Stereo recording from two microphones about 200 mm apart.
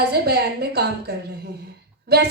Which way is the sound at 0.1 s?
55° right (ahead or behind).